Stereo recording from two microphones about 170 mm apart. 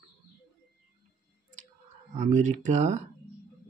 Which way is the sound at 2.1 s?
45° right (ahead or behind).